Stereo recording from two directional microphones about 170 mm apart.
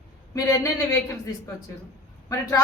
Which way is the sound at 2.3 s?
20° left (ahead or behind).